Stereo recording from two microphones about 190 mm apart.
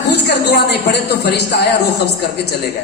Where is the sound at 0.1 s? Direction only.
60° left (ahead or behind).